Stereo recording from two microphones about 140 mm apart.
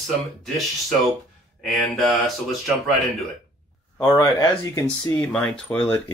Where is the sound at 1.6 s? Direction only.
Centre (ahead or behind).